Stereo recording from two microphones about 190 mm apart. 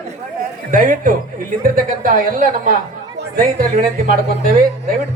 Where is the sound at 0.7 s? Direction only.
45° right (ahead or behind).